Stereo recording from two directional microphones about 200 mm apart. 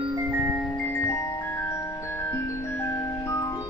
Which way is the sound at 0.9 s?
10° left (ahead or behind).